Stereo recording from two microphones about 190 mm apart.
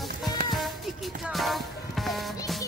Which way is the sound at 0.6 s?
Centre (ahead or behind).